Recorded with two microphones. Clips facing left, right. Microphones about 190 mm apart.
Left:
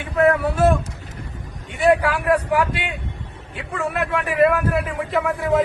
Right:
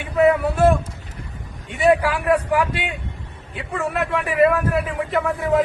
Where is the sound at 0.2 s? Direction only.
5° right (ahead or behind).